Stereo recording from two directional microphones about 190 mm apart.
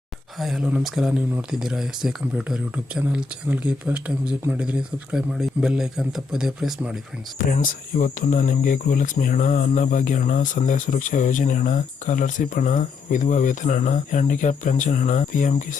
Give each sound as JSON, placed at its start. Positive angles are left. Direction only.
{"t": 0.3, "sound": "speech", "side_deg": 0}
{"t": 7.3, "sound": "speech", "side_deg": 45}